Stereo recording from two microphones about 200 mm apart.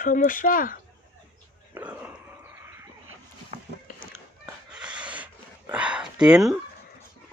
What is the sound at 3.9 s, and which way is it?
Run, 40° left (ahead or behind).